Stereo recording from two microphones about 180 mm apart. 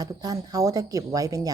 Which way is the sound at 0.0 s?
20° right (ahead or behind).